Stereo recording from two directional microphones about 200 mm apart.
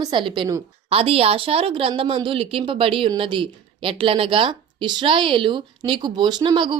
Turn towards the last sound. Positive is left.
turn(degrees=-25)  # may be behind; listen again after turning